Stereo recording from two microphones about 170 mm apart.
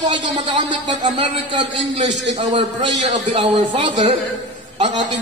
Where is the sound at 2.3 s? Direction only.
45° right (ahead or behind).